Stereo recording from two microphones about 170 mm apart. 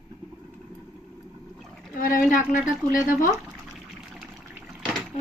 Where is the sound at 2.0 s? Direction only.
55° left (ahead or behind).